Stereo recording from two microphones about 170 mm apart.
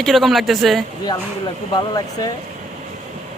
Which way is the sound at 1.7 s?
20° left (ahead or behind).